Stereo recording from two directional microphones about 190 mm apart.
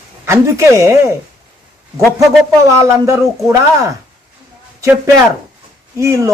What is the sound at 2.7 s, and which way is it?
A woman's voice, 15° right (ahead or behind).